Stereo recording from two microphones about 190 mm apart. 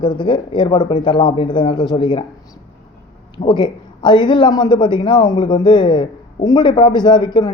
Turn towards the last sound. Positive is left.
turn(degrees=25)  # may be behind; listen again after turning